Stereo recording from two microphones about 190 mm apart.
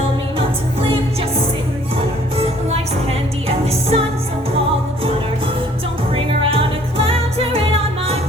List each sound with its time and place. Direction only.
2.6 s music: 30° right (ahead or behind)
6.1 s music: 30° right (ahead or behind)